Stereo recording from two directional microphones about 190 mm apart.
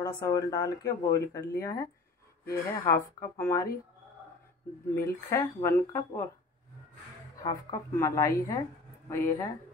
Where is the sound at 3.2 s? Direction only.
15° left (ahead or behind).